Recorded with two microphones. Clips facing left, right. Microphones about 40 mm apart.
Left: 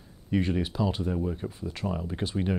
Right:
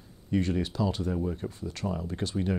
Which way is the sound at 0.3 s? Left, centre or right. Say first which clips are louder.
Left 1 dB; centre.